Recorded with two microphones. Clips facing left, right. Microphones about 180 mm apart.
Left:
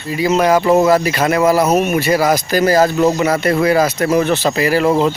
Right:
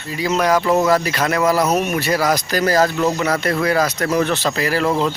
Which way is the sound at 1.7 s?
10° left (ahead or behind).